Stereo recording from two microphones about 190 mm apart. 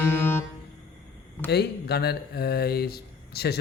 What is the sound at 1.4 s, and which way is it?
Speech, 60° left (ahead or behind).